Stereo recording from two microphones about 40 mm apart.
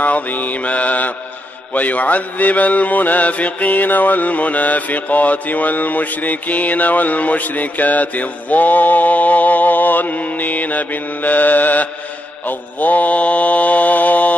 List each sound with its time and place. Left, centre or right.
0.0 s mantra: left